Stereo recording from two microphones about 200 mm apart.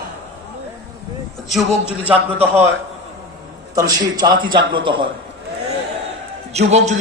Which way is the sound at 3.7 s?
20° right (ahead or behind).